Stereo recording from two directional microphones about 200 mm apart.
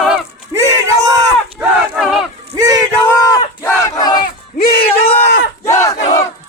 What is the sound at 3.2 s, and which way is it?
Battle cry, 15° left (ahead or behind).